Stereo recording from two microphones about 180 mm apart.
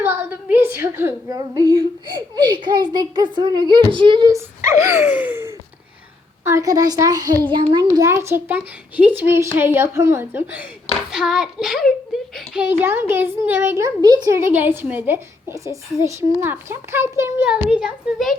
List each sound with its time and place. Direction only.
0.0 s a woman's voice: 10° right (ahead or behind)
4.9 s a sound: 10° right (ahead or behind)
6.4 s a woman's voice: 15° right (ahead or behind)
11.1 s child singing: 5° right (ahead or behind)
12.5 s a child's voice: 10° right (ahead or behind)